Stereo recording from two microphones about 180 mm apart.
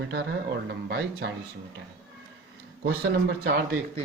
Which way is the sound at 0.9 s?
65° right (ahead or behind).